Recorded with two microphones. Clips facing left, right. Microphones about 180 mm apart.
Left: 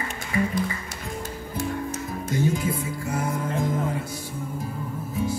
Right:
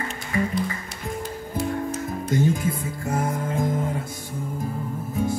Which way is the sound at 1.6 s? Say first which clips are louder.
Right 3 dB; 45° left (ahead or behind).